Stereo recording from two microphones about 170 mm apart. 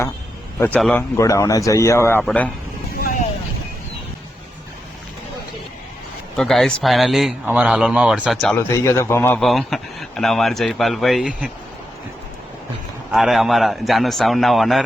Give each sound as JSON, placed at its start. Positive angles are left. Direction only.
{"t": 0.6, "sound": "speech", "side_deg": 5}
{"t": 1.1, "sound": "speech", "side_deg": 20}
{"t": 6.3, "sound": "speech", "side_deg": 5}
{"t": 8.5, "sound": "speech", "side_deg": 15}
{"t": 9.4, "sound": "speech", "side_deg": 0}
{"t": 13.1, "sound": "speech", "side_deg": 0}